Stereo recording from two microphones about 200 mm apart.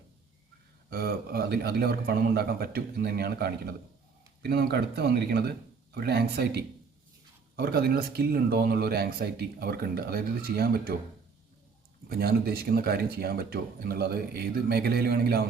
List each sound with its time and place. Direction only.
0.9 s speech: 50° right (ahead or behind)
12.0 s speech: 50° right (ahead or behind)